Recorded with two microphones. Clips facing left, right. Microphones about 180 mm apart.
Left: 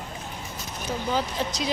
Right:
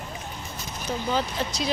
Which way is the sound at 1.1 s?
15° left (ahead or behind).